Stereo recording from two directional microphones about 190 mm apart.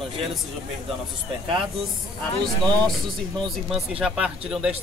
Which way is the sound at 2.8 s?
Centre (ahead or behind).